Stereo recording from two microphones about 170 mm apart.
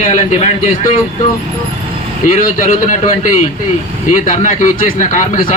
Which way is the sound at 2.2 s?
55° left (ahead or behind).